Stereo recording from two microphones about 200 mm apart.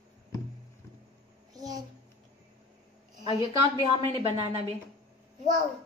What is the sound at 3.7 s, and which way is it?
Speech, 25° right (ahead or behind).